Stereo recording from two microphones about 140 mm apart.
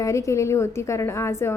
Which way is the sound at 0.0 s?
20° left (ahead or behind).